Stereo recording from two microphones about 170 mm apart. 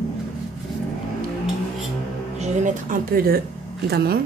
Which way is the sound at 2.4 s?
50° right (ahead or behind).